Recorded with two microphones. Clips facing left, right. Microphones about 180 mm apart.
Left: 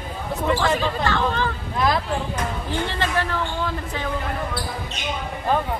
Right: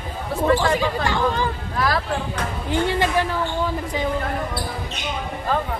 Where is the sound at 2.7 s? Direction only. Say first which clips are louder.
Right 8 dB; 15° right (ahead or behind).